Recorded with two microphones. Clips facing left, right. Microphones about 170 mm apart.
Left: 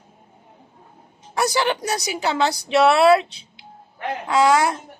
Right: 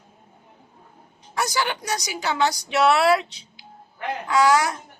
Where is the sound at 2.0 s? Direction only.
25° left (ahead or behind).